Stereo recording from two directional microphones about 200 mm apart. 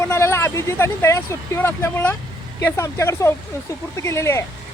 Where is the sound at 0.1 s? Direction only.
15° left (ahead or behind).